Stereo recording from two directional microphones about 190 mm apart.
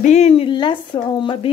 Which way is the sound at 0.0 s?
35° left (ahead or behind).